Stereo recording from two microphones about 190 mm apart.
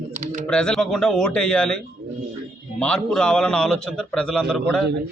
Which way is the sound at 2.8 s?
5° left (ahead or behind).